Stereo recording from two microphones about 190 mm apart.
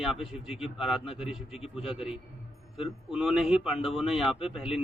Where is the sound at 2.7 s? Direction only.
Centre (ahead or behind).